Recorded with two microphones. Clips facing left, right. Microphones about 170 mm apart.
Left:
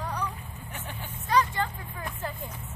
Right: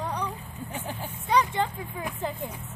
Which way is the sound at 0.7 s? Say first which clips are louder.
Right 5 dB; 15° right (ahead or behind).